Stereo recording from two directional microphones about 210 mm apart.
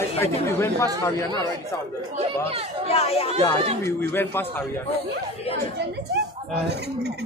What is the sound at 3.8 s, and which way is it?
Speech, 10° left (ahead or behind).